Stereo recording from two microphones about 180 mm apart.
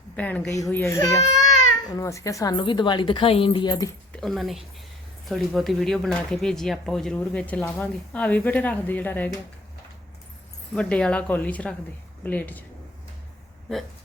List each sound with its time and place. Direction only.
0.2 s a woman's voice: 10° left (ahead or behind); by 3.8 s 25° left (ahead or behind)
4.1 s speech: centre (ahead or behind)
10.8 s speech: 5° left (ahead or behind)